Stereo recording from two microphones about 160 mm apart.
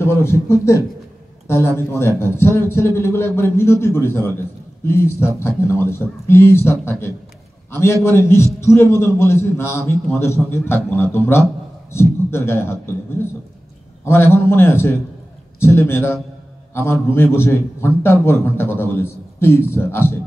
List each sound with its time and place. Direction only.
0.0 s a man's voice: 15° left (ahead or behind)
14.0 s a man's voice: 15° left (ahead or behind)